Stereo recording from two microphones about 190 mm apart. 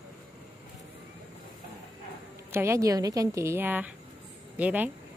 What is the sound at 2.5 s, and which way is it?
A woman's voice, 15° right (ahead or behind).